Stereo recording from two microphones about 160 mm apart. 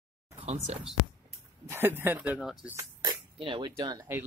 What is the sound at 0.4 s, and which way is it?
Speech, 40° right (ahead or behind).